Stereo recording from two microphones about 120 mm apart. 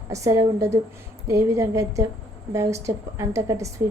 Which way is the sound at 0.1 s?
25° right (ahead or behind).